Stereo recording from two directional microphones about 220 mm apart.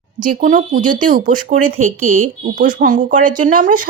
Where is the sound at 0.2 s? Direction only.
40° right (ahead or behind).